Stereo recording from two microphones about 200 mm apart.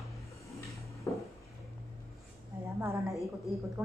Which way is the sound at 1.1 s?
10° left (ahead or behind).